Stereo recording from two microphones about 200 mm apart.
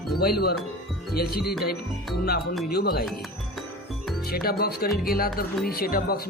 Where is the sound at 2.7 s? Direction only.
50° left (ahead or behind).